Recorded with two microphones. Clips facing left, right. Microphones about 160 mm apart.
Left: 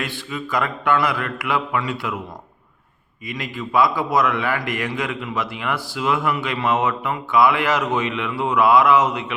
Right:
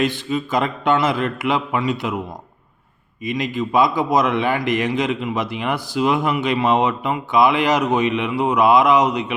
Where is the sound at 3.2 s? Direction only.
20° right (ahead or behind).